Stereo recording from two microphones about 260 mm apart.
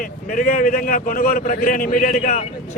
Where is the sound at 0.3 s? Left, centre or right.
Left.